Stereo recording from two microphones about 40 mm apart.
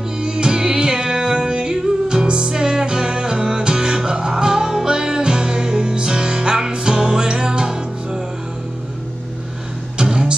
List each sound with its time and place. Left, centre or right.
0.2 s music: right
9.9 s music: centre